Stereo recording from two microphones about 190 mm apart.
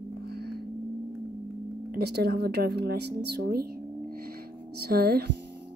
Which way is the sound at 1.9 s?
55° right (ahead or behind).